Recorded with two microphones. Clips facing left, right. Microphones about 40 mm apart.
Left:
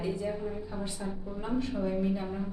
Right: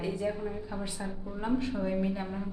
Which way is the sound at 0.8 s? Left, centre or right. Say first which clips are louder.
Left 1 dB; centre.